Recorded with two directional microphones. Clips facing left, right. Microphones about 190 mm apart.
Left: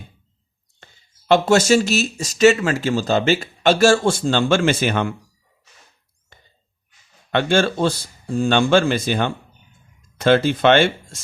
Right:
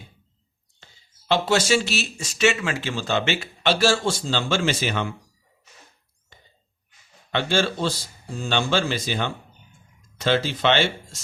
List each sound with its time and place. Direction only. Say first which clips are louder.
1.3 s speech: left 6 dB; 45° left (ahead or behind)
7.3 s speech: left 5 dB; 55° left (ahead or behind)